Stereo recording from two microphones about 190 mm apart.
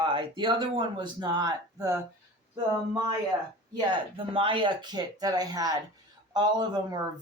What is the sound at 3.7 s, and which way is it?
Speech, 25° right (ahead or behind).